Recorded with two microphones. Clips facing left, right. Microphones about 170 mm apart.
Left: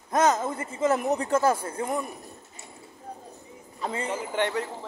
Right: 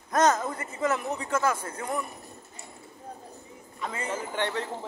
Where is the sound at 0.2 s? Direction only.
20° left (ahead or behind).